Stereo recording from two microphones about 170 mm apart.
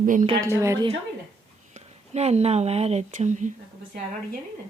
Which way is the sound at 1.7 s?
40° right (ahead or behind).